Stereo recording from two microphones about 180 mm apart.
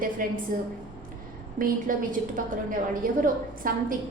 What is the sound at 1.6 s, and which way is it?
A woman's voice, 50° right (ahead or behind).